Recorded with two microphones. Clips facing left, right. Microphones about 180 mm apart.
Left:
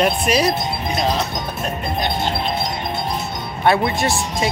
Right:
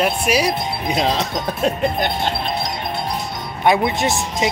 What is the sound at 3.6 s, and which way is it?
Speech, 15° right (ahead or behind).